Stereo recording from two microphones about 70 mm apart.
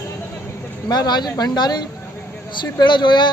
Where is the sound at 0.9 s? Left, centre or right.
Left.